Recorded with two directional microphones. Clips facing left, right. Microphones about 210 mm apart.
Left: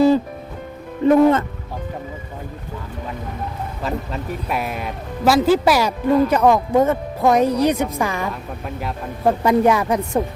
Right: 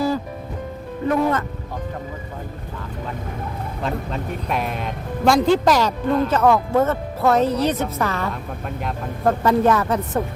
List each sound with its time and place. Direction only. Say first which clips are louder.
1.0 s speech: left 7 dB; 25° left (ahead or behind)
3.8 s a man's voice: even; 5° left (ahead or behind)